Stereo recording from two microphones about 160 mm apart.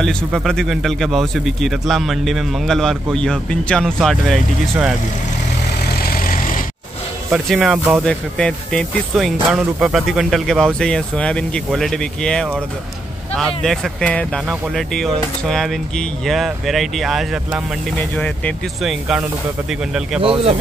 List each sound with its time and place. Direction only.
0.0 s speech: centre (ahead or behind)
5.9 s vehicle: 70° left (ahead or behind)
7.3 s speech: 5° right (ahead or behind)
20.2 s speech: 35° right (ahead or behind)